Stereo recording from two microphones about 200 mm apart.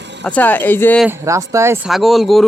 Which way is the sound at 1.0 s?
15° right (ahead or behind).